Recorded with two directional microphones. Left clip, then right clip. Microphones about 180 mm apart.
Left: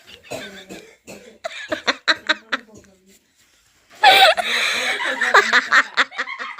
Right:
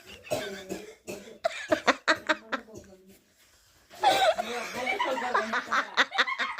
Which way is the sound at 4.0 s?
25° left (ahead or behind).